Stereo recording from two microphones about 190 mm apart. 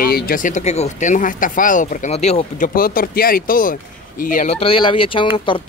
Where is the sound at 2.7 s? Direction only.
50° left (ahead or behind); by 5.3 s 25° left (ahead or behind).